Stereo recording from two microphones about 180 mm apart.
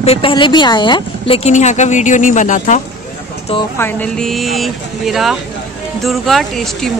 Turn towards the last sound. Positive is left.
turn(degrees=0)  # may be behind; listen again after turning